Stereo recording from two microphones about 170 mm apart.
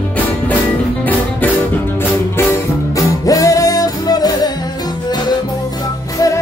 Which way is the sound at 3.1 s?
20° left (ahead or behind).